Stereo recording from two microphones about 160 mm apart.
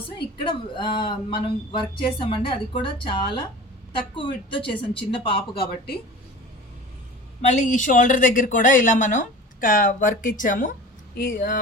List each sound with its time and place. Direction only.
0.4 s speech: 30° left (ahead or behind)
7.4 s speech: 50° left (ahead or behind)